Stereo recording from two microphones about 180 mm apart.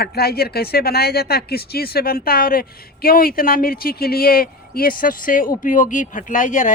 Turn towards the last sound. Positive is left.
turn(degrees=45)  # may be behind; listen again after turning